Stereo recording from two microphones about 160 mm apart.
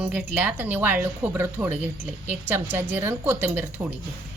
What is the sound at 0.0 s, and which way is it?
Speech, 10° right (ahead or behind).